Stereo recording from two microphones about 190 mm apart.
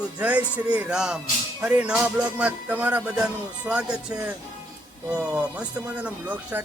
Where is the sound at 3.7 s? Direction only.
5° right (ahead or behind).